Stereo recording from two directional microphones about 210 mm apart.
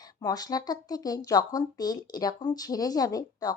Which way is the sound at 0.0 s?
15° left (ahead or behind).